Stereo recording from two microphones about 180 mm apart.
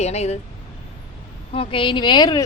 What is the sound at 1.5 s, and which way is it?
Speech, 30° left (ahead or behind).